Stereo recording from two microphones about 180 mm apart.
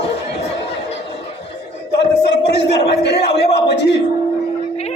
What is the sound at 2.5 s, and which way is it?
A man's voice, 65° left (ahead or behind).